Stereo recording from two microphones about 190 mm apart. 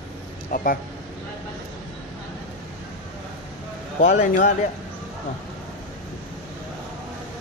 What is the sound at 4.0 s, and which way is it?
Speech, 40° left (ahead or behind).